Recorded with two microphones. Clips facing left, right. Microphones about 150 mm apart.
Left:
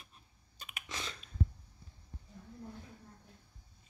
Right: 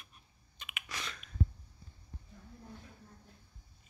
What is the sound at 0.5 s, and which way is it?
Computer keyboard, 35° left (ahead or behind).